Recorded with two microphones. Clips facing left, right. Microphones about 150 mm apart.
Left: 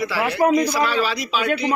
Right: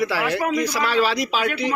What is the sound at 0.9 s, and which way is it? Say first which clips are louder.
Speech: right 2 dB; 85° right.